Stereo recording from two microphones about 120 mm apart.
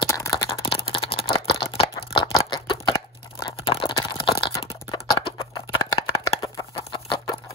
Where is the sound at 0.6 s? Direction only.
50° left (ahead or behind).